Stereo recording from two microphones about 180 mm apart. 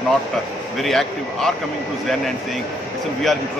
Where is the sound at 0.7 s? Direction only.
Centre (ahead or behind).